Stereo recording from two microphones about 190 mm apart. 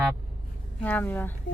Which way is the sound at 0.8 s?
10° left (ahead or behind).